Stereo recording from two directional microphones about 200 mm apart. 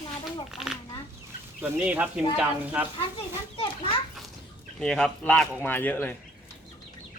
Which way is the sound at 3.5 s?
25° left (ahead or behind).